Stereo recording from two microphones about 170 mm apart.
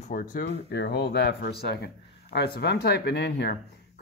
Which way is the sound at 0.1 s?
55° left (ahead or behind).